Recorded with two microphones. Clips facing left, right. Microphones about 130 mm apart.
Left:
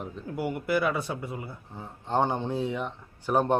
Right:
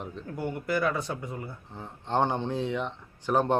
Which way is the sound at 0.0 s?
5° left (ahead or behind).